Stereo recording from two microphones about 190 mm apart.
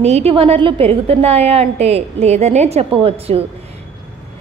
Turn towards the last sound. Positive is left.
turn(degrees=-30)  # may be behind; listen again after turning